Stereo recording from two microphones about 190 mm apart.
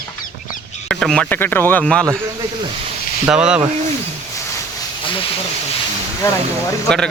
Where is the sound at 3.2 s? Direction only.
5° right (ahead or behind).